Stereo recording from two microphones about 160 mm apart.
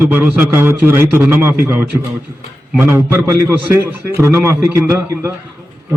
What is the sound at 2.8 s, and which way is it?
A man's voice, 15° right (ahead or behind).